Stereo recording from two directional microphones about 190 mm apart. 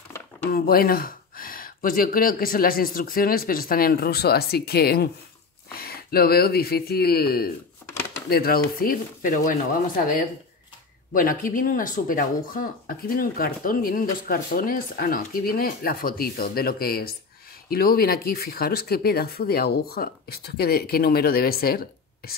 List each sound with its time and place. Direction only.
0.5 s speech: 50° left (ahead or behind)
11.1 s speech: 45° left (ahead or behind)